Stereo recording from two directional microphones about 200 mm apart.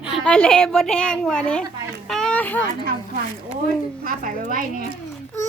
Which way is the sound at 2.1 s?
5° left (ahead or behind).